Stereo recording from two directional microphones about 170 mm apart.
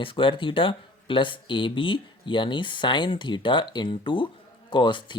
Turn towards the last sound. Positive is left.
turn(degrees=30)  # may be behind; listen again after turning